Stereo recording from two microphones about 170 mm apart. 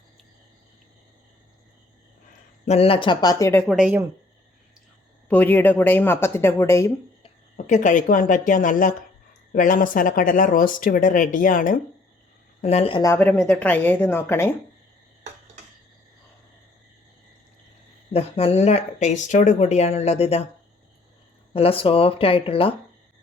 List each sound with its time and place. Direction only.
2.6 s speech: 35° left (ahead or behind); by 3.6 s 20° left (ahead or behind)
3.7 s speech: 5° right (ahead or behind)
5.3 s speech: 10° left (ahead or behind)
7.5 s speech: 50° left (ahead or behind)
12.6 s speech: 35° left (ahead or behind)
13.0 s speech: 15° left (ahead or behind)
18.1 s speech: 35° left (ahead or behind)
21.5 s speech: 35° left (ahead or behind)